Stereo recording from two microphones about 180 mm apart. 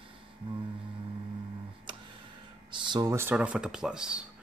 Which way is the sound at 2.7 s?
20° right (ahead or behind).